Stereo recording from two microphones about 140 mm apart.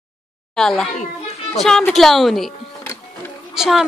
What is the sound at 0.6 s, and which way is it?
A woman's voice, 5° left (ahead or behind).